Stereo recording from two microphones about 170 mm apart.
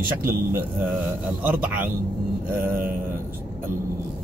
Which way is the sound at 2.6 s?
55° right (ahead or behind).